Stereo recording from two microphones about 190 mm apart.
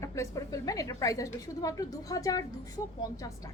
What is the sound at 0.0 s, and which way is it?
A woman's voice, 15° left (ahead or behind).